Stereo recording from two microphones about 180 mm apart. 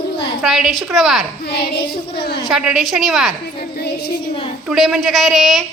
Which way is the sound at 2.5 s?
Centre (ahead or behind).